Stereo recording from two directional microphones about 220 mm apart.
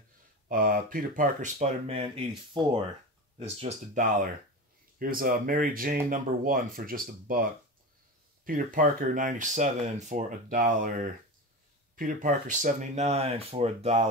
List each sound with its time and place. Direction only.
0.5 s speech: 40° right (ahead or behind)
3.3 s speech: 30° right (ahead or behind)
8.5 s speech: 35° right (ahead or behind)
11.9 s speech: 40° right (ahead or behind)